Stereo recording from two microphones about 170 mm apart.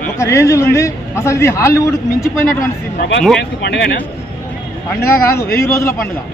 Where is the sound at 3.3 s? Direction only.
75° left (ahead or behind).